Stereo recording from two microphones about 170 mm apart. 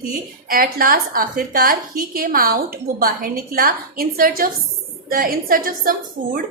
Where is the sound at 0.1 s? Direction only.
55° right (ahead or behind).